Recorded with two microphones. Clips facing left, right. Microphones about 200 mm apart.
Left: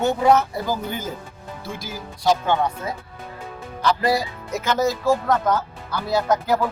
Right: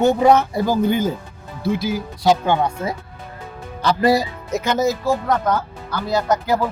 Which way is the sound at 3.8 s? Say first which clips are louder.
Right 4 dB; 25° right (ahead or behind).